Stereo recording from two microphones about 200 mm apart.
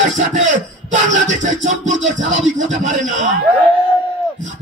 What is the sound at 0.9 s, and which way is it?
Music, 40° right (ahead or behind).